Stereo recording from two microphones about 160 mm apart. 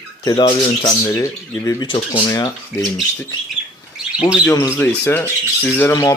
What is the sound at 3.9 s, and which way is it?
Bird, 5° right (ahead or behind).